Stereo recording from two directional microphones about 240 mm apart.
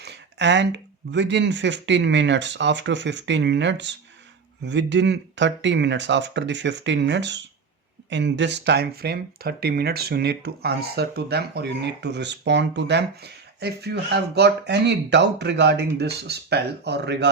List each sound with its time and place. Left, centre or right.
0.0 s speech: right